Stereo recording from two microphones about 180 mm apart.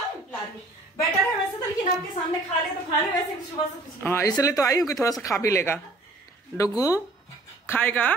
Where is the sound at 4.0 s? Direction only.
15° left (ahead or behind).